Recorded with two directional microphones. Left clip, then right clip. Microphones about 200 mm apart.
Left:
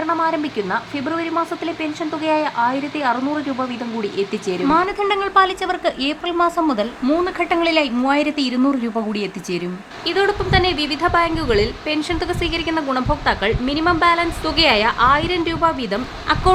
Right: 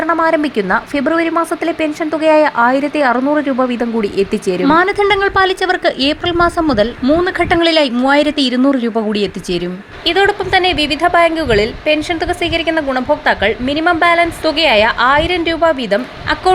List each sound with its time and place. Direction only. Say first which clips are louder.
0.1 s a woman's voice: right 7 dB; 25° right (ahead or behind); by 16.5 s 10° right (ahead or behind)